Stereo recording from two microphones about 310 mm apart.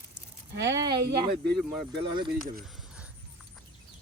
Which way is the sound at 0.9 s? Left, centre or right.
Centre.